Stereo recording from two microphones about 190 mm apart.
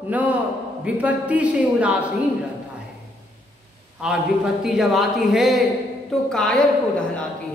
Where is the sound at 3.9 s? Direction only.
5° right (ahead or behind).